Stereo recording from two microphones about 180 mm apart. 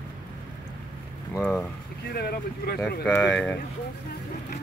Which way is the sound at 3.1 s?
5° left (ahead or behind).